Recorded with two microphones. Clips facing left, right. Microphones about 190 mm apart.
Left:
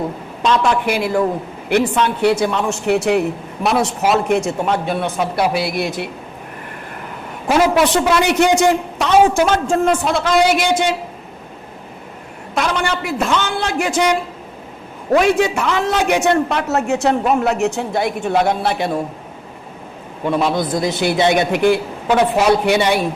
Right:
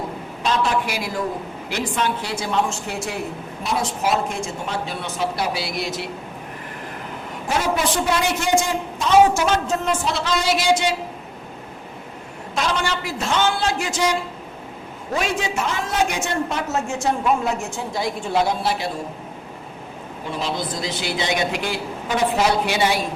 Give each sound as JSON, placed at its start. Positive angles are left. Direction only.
{"t": 0.9, "sound": "a man's voice", "side_deg": 60}
{"t": 7.4, "sound": "a man's voice", "side_deg": 90}
{"t": 9.6, "sound": "speech", "side_deg": 50}
{"t": 12.5, "sound": "a man's voice", "side_deg": 55}
{"t": 20.2, "sound": "a man's voice", "side_deg": 60}